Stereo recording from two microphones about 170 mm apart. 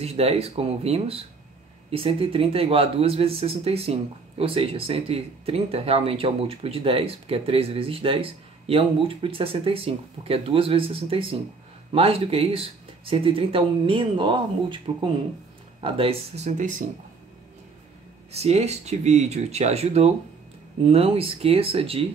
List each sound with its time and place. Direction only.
0.0 s speech: 35° right (ahead or behind)
18.3 s speech: 40° right (ahead or behind)